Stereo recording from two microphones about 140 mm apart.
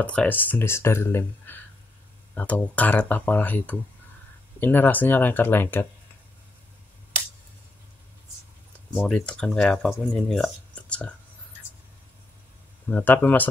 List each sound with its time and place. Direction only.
0.0 s speech: 10° left (ahead or behind)
8.9 s speech: 5° left (ahead or behind)
12.9 s speech: 15° left (ahead or behind)